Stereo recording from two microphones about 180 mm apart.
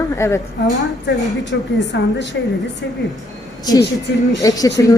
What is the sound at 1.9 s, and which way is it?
Speech, 70° left (ahead or behind).